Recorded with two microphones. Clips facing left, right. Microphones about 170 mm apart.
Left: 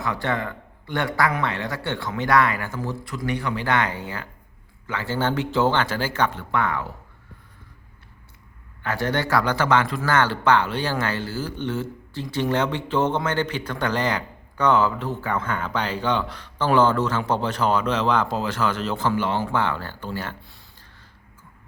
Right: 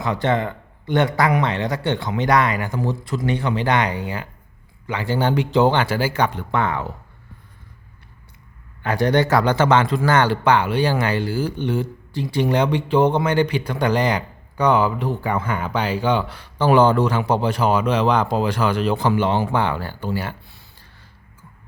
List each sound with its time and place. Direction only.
0.0 s a man's voice: 20° right (ahead or behind)
8.8 s speech: 15° right (ahead or behind)